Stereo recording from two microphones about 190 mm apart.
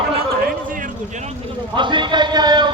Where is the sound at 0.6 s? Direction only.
45° right (ahead or behind).